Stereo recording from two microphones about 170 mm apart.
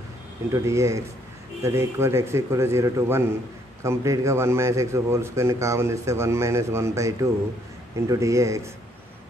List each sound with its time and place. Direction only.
0.5 s a man's voice: 15° right (ahead or behind)